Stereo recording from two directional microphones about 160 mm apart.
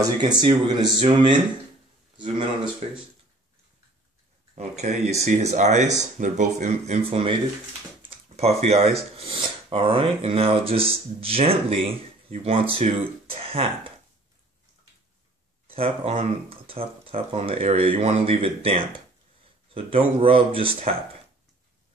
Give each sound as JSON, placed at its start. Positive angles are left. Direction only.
{"t": 0.4, "sound": "speech", "side_deg": -30}
{"t": 4.6, "sound": "speech", "side_deg": -45}
{"t": 15.6, "sound": "speech", "side_deg": -35}